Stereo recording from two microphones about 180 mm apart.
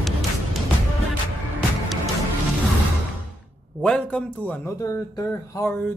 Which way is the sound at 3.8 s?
5° left (ahead or behind).